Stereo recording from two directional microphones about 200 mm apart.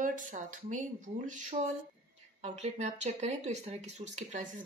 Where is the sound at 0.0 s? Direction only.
40° right (ahead or behind).